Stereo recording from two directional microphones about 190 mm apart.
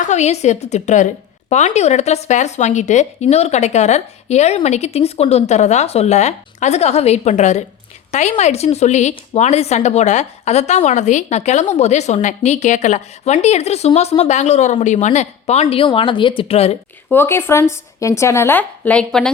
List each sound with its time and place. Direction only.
0.0 s a woman's voice: 35° left (ahead or behind)
17.1 s speech: 10° left (ahead or behind)